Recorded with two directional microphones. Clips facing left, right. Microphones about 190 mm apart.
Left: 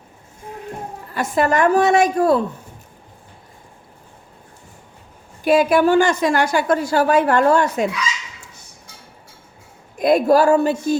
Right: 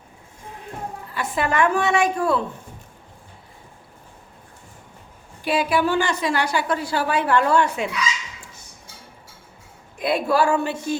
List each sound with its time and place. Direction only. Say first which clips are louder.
1.1 s a woman's voice: left 5 dB; 45° left (ahead or behind)
5.4 s a woman's voice: left 6 dB; 45° left (ahead or behind)
10.0 s a woman's voice: left 6 dB; 45° left (ahead or behind)